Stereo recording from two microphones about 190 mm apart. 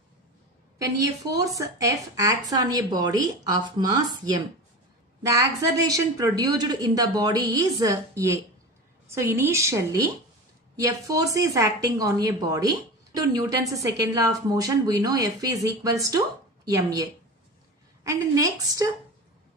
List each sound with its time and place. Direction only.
0.7 s a woman's voice: 15° right (ahead or behind)